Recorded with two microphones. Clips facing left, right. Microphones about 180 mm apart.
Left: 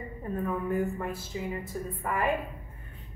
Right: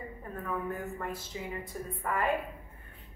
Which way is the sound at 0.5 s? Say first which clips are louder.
Left 5 dB; 15° left (ahead or behind).